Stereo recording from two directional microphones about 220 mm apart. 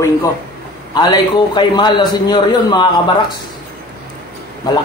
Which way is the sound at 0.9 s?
20° left (ahead or behind).